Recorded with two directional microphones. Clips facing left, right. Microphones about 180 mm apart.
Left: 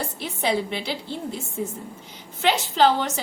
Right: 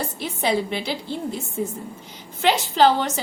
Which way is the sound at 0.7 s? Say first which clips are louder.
Right 2 dB; 40° right (ahead or behind).